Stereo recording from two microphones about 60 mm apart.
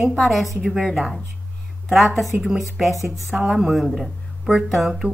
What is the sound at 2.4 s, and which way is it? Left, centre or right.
Speech, centre.